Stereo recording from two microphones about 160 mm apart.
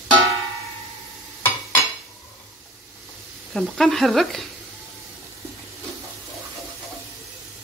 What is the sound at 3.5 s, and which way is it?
Speech, centre (ahead or behind).